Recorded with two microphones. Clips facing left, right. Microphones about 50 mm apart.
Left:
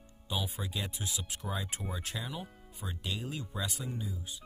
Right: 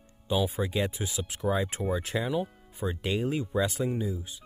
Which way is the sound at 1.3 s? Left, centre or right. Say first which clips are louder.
Right 13 dB; right.